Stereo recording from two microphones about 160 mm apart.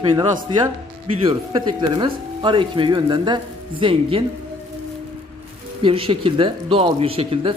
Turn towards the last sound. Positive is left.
turn(degrees=-35)  # may be behind; listen again after turning